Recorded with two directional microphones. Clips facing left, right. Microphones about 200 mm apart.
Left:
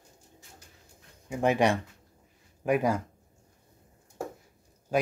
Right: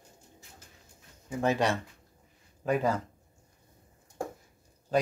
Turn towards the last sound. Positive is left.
turn(degrees=10)  # may be behind; listen again after turning